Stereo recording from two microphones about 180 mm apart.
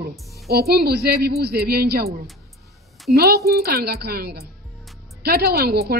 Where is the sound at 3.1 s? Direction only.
60° right (ahead or behind).